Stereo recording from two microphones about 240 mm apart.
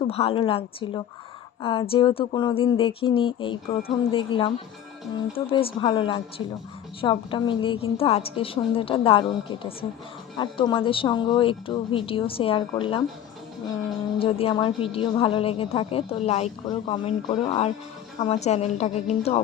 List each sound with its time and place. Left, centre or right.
0.1 s a woman's voice: left
14.2 s a woman's voice: left